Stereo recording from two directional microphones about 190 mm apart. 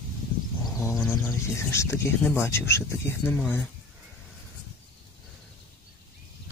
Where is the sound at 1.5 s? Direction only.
15° left (ahead or behind).